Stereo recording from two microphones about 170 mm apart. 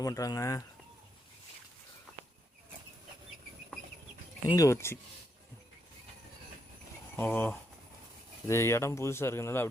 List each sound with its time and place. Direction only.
0.0 s speech: 20° left (ahead or behind)
4.4 s speech: 20° left (ahead or behind)
7.2 s speech: 10° left (ahead or behind)